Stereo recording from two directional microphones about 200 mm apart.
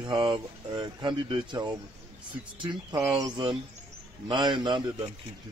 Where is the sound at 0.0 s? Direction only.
20° right (ahead or behind).